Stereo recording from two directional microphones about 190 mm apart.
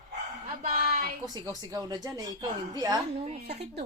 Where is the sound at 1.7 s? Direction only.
20° right (ahead or behind).